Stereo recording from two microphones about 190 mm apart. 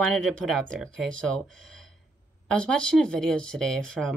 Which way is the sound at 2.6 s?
5° left (ahead or behind).